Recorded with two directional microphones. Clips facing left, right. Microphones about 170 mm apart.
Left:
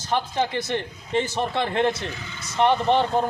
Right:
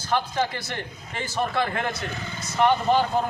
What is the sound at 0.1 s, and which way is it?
A man's voice, 20° left (ahead or behind).